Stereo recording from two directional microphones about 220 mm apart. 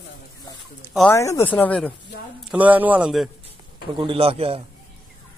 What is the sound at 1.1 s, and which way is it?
Speech, 15° left (ahead or behind).